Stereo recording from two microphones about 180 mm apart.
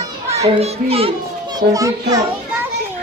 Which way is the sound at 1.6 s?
20° right (ahead or behind).